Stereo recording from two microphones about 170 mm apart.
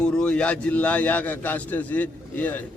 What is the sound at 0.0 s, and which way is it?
A man's voice, 5° left (ahead or behind).